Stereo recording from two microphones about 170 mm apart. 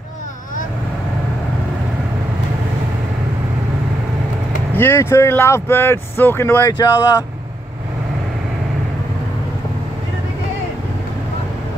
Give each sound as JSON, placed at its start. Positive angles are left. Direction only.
{"t": 4.7, "sound": "speech", "side_deg": 15}